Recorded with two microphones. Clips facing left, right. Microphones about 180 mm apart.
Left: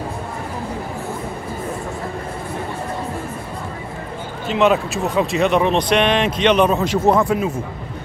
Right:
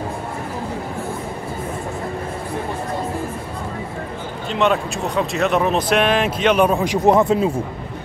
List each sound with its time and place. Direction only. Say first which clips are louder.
4.5 s speech: left 3 dB; centre (ahead or behind)
7.1 s speech: right 3 dB; 20° right (ahead or behind)